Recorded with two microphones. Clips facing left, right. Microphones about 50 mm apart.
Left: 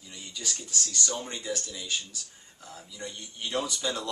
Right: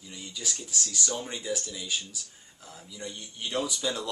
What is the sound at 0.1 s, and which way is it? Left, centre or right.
Speech, centre.